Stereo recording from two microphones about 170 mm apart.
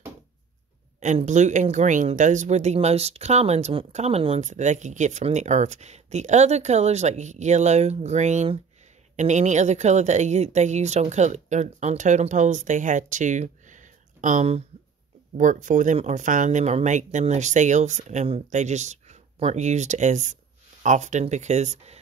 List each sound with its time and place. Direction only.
1.0 s speech: 45° right (ahead or behind)